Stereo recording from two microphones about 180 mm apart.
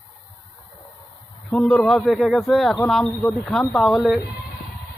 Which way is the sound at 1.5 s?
Centre (ahead or behind).